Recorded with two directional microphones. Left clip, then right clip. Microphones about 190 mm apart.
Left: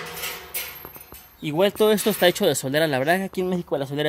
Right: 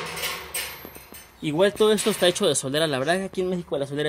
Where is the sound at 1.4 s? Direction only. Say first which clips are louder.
Even; 45° left (ahead or behind).